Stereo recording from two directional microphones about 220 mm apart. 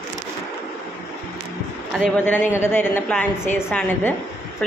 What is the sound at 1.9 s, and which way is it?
Speech, 5° left (ahead or behind).